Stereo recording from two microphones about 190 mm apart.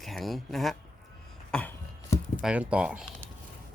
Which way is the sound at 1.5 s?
10° left (ahead or behind).